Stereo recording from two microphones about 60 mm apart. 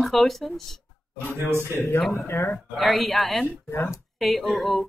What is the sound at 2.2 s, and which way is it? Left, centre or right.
Speech, left.